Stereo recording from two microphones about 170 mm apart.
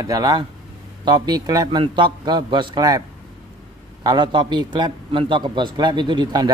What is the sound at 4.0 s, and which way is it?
Speech, 25° right (ahead or behind).